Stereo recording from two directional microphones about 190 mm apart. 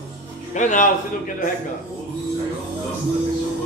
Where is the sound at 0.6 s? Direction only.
40° left (ahead or behind).